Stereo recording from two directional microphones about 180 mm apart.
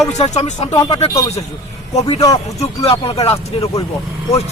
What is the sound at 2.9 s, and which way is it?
Speech, 35° left (ahead or behind).